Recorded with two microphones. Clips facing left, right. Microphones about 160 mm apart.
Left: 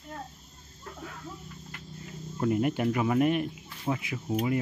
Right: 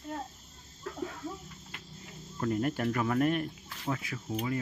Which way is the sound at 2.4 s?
10° left (ahead or behind).